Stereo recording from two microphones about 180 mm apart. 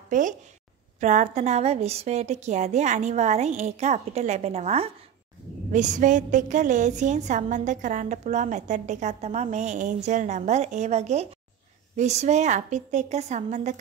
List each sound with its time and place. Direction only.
0.1 s a woman's voice: 45° right (ahead or behind)